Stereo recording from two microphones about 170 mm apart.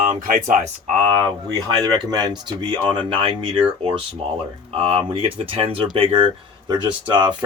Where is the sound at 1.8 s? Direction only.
25° right (ahead or behind).